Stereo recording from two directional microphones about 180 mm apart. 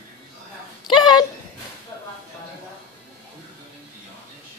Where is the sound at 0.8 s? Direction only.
25° left (ahead or behind).